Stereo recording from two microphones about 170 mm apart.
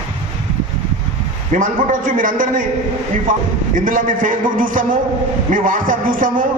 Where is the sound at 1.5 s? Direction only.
50° right (ahead or behind).